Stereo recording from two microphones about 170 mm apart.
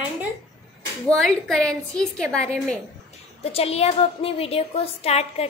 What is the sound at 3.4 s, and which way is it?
A woman's voice, 35° left (ahead or behind).